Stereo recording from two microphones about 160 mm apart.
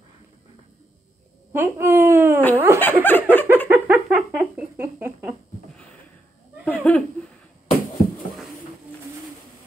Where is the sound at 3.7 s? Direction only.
10° right (ahead or behind).